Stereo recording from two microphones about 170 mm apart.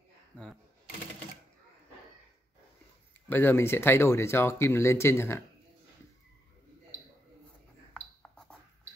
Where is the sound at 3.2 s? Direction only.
10° left (ahead or behind).